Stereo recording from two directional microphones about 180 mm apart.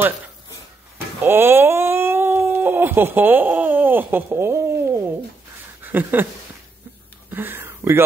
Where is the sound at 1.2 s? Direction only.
10° right (ahead or behind).